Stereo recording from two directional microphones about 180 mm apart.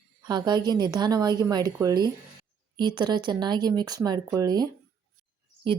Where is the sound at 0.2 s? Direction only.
25° right (ahead or behind).